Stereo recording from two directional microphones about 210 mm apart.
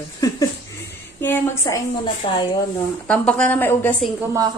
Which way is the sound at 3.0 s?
5° left (ahead or behind).